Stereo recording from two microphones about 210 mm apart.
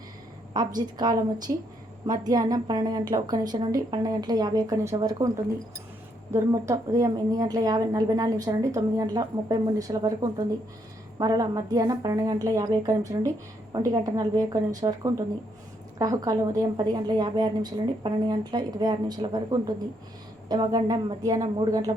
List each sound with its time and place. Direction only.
0.5 s a woman's voice: 20° right (ahead or behind)
6.3 s a woman's voice: 15° right (ahead or behind)